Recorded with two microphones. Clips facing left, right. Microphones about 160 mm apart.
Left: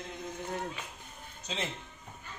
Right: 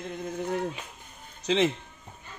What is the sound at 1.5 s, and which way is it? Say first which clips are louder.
Speech: right 14 dB; 90° right.